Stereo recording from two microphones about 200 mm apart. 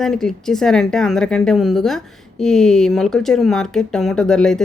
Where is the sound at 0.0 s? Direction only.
Centre (ahead or behind).